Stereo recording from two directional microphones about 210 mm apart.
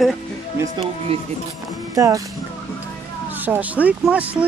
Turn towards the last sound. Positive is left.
turn(degrees=-5)  # may be behind; listen again after turning